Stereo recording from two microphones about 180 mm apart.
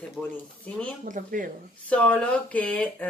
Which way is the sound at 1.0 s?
45° right (ahead or behind).